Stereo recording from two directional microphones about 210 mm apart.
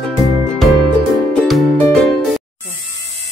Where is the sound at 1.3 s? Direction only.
5° left (ahead or behind).